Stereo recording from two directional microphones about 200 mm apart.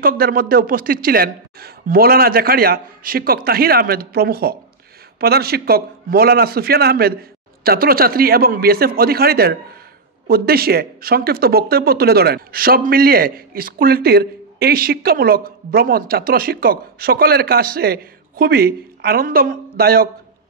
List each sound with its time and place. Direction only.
0.0 s speech: 45° right (ahead or behind)